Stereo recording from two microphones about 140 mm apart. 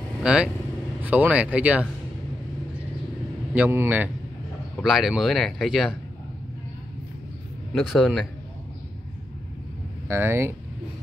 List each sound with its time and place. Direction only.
0.2 s speech: 5° right (ahead or behind)
3.5 s speech: 15° right (ahead or behind)
4.8 s speech: 5° right (ahead or behind)
7.7 s speech: centre (ahead or behind)
10.0 s speech: 15° right (ahead or behind)